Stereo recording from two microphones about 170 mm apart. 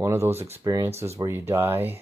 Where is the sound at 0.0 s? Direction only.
15° right (ahead or behind).